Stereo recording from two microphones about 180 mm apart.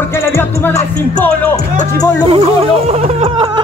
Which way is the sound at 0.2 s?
15° left (ahead or behind).